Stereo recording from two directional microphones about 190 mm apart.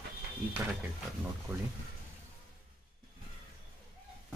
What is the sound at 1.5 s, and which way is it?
Speech, 5° right (ahead or behind).